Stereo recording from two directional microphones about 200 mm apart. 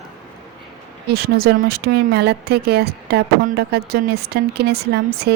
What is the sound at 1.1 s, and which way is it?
Speech, 50° right (ahead or behind).